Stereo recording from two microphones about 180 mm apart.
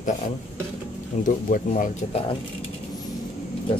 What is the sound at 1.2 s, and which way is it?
Speech, 45° left (ahead or behind).